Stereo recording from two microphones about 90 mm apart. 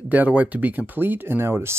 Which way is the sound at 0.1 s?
20° right (ahead or behind).